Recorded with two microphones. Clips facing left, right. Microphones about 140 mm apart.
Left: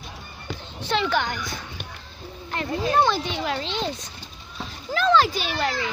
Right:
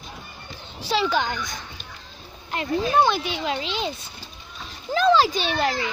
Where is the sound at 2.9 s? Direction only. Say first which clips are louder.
Even; 5° right (ahead or behind).